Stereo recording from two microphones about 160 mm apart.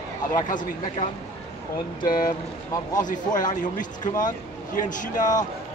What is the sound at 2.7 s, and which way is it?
Speech, 25° left (ahead or behind).